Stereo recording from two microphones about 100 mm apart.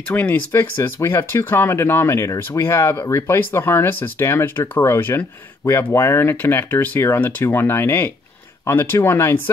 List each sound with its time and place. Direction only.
0.1 s speech: 15° left (ahead or behind)